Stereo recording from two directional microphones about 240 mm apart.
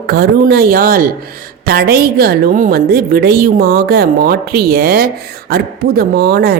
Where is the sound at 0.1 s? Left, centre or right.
Right.